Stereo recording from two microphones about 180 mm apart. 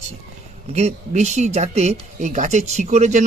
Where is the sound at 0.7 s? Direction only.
40° right (ahead or behind).